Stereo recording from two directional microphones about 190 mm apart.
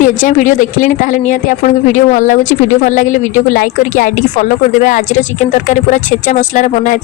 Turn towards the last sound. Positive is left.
turn(degrees=40)  # may be behind; listen again after turning